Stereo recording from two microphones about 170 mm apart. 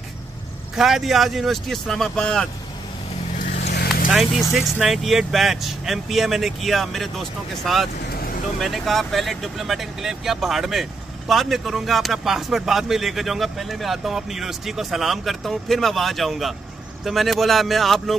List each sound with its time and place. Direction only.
0.7 s speech: centre (ahead or behind)
3.3 s vehicle: 40° left (ahead or behind)
3.7 s vehicle: 65° left (ahead or behind)
4.1 s speech: centre (ahead or behind)
8.1 s vehicle: 60° left (ahead or behind)
8.5 s speech: centre (ahead or behind)